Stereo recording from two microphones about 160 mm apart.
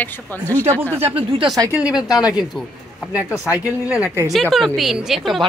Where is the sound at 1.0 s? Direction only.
35° right (ahead or behind).